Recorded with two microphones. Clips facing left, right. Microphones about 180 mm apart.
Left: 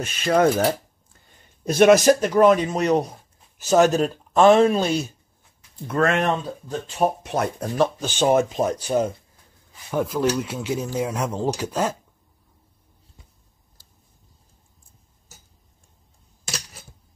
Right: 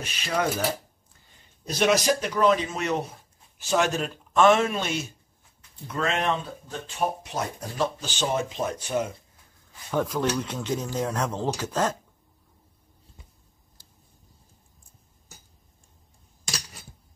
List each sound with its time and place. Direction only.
0.0 s speech: 50° left (ahead or behind)
1.7 s speech: 50° left (ahead or behind); by 5.0 s 35° left (ahead or behind)
5.9 s speech: 55° left (ahead or behind)
7.2 s speech: 60° left (ahead or behind); by 9.1 s 35° left (ahead or behind)
9.8 s speech: 10° left (ahead or behind)